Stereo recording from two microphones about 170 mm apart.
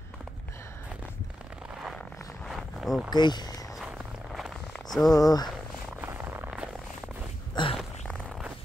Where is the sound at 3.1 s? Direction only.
25° left (ahead or behind).